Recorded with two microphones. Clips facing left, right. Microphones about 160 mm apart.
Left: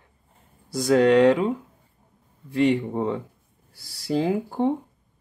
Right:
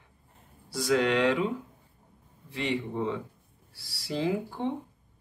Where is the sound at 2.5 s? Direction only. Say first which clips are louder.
Left 10 dB; 45° left (ahead or behind).